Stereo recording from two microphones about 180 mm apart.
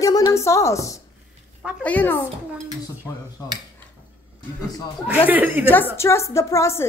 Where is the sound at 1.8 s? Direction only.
10° left (ahead or behind).